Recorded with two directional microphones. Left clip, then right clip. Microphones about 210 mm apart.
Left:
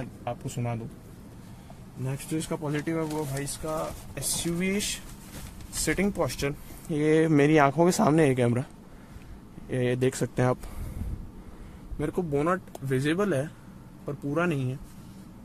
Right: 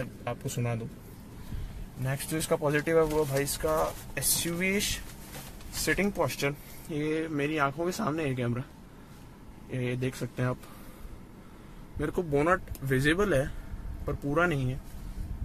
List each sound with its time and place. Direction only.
0.2 s speech: centre (ahead or behind)
2.0 s speech: 5° right (ahead or behind)
4.1 s speech: centre (ahead or behind); by 6.5 s 15° left (ahead or behind)
6.9 s speech: 40° left (ahead or behind)
9.7 s speech: 45° left (ahead or behind)
12.0 s speech: 15° left (ahead or behind)